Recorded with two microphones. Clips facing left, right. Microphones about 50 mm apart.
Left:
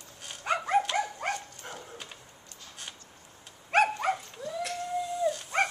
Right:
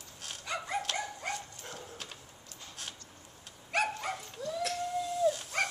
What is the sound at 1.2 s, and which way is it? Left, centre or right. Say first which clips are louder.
Dog: left 5 dB; left.